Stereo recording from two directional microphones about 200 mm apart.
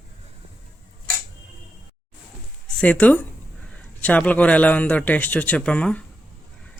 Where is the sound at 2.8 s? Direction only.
5° left (ahead or behind).